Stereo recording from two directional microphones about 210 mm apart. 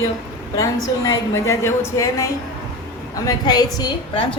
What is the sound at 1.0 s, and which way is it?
A woman's voice, 15° left (ahead or behind).